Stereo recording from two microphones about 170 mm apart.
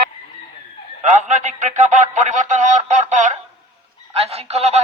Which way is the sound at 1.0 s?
45° right (ahead or behind).